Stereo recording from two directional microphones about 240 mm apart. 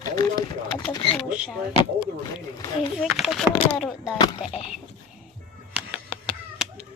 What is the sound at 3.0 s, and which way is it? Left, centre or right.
Speech, centre.